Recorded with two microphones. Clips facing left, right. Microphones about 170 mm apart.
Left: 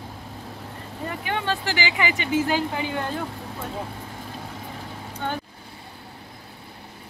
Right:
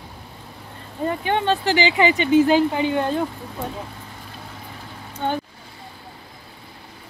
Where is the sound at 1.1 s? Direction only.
25° right (ahead or behind).